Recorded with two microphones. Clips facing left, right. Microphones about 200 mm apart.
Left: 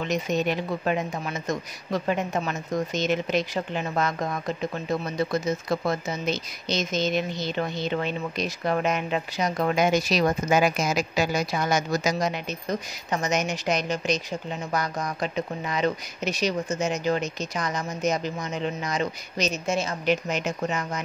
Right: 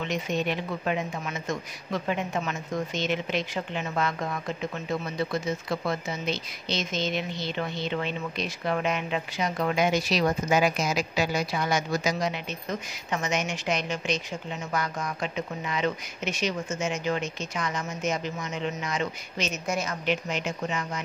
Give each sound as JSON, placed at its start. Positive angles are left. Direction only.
{"t": 0.0, "sound": "speech", "side_deg": 40}
{"t": 19.6, "sound": "a woman's voice", "side_deg": 25}
{"t": 20.1, "sound": "speech", "side_deg": 40}